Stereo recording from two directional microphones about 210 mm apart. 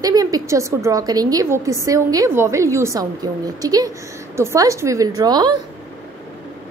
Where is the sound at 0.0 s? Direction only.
15° right (ahead or behind).